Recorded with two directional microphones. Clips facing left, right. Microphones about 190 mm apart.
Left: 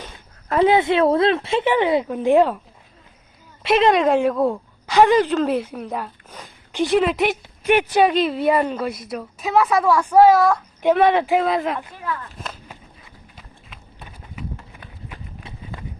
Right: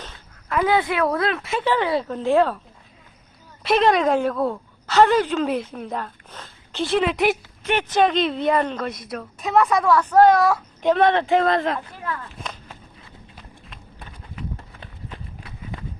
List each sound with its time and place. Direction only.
0.4 s a sound: 35° left (ahead or behind)
0.7 s a woman's voice: 25° left (ahead or behind)
3.6 s a woman's voice: centre (ahead or behind)
7.0 s speech: centre (ahead or behind)
7.6 s speech: 10° left (ahead or behind)
12.4 s a sound: 5° left (ahead or behind)